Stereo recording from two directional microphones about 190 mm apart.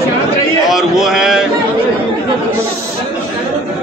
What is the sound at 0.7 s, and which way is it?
Speech, centre (ahead or behind).